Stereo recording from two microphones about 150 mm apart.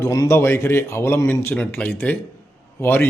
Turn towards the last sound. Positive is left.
turn(degrees=15)  # may be behind; listen again after turning